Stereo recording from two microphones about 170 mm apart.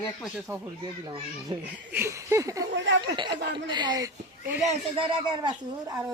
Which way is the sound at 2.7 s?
90° right.